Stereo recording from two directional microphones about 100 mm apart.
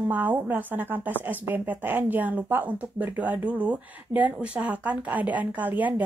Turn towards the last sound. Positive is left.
turn(degrees=-15)  # may be behind; listen again after turning